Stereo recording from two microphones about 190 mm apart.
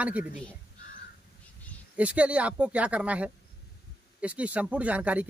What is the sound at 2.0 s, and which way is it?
Speech, 5° right (ahead or behind).